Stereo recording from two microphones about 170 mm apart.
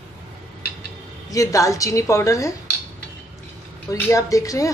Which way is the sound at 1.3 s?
20° left (ahead or behind).